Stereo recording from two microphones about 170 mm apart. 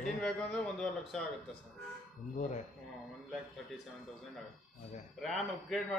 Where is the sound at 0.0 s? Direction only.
5° left (ahead or behind).